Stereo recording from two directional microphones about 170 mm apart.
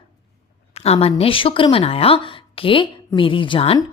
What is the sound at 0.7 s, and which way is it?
A woman's voice, 40° left (ahead or behind).